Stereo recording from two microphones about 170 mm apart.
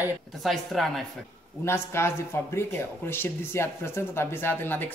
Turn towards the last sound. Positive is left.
turn(degrees=10)  # may be behind; listen again after turning